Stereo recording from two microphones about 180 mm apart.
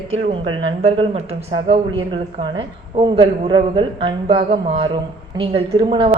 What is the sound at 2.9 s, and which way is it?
Speech, 30° right (ahead or behind).